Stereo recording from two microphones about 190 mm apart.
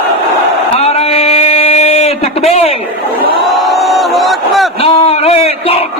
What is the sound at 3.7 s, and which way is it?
Crowd, centre (ahead or behind).